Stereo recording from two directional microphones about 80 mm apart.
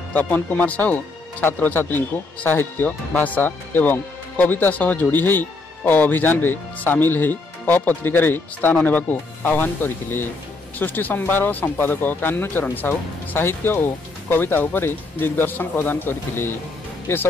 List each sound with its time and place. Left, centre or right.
0.1 s speech: left